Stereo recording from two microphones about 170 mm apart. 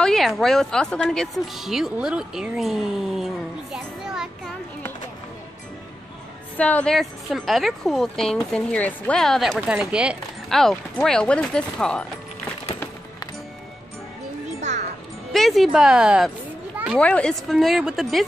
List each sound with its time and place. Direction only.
0.0 s a woman's voice: centre (ahead or behind)
6.5 s a woman's voice: 5° left (ahead or behind)
15.3 s a woman's voice: centre (ahead or behind)
16.7 s children playing: 5° right (ahead or behind)
17.0 s a woman's voice: 5° left (ahead or behind)